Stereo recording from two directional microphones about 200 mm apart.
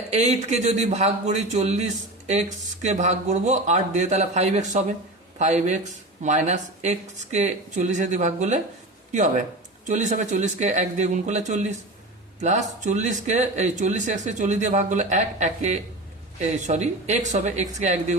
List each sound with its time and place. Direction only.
0.1 s speech: 35° right (ahead or behind)
9.8 s speech: 40° right (ahead or behind)